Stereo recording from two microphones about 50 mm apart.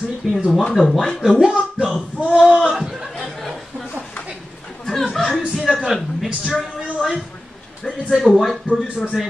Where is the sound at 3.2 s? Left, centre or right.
Centre.